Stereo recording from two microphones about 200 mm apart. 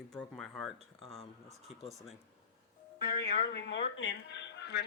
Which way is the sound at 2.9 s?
55° left (ahead or behind).